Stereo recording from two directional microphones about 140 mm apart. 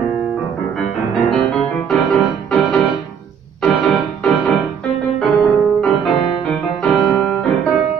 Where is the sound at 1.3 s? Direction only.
Centre (ahead or behind).